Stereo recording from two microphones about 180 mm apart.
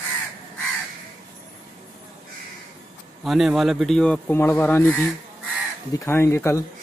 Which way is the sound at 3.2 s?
Centre (ahead or behind).